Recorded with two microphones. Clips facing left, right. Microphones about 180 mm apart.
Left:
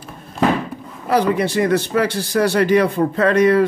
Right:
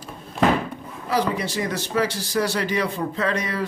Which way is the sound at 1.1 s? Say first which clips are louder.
Left 7 dB; 60° left (ahead or behind).